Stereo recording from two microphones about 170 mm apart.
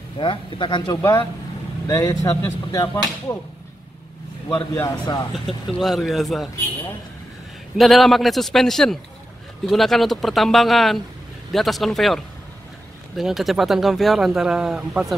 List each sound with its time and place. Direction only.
0.2 s speech: 30° left (ahead or behind)
4.5 s speech: 10° left (ahead or behind)
5.7 s speech: centre (ahead or behind)
7.7 s speech: centre (ahead or behind)